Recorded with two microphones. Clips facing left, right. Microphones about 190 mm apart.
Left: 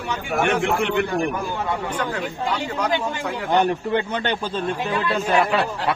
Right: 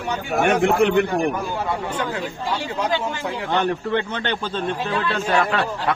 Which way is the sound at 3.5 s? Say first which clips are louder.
Left 2 dB; 10° left (ahead or behind).